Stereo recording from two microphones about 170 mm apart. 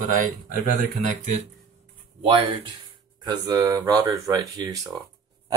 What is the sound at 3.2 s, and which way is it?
Speech, 20° right (ahead or behind).